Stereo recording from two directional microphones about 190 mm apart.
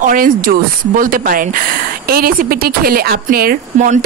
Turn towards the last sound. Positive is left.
turn(degrees=-45)  # may be behind; listen again after turning